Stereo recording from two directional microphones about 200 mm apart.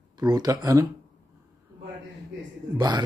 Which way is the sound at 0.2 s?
20° right (ahead or behind).